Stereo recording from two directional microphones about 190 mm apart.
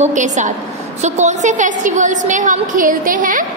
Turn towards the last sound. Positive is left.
turn(degrees=-45)  # may be behind; listen again after turning